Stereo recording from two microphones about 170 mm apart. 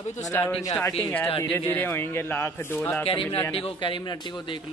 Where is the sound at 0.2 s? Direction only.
10° left (ahead or behind).